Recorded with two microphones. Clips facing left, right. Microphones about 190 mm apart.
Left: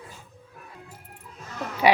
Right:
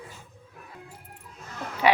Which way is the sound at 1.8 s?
15° left (ahead or behind).